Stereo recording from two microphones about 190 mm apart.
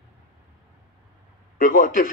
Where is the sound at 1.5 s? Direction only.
50° left (ahead or behind).